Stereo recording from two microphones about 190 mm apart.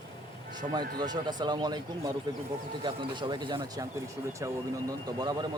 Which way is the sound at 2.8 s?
25° right (ahead or behind).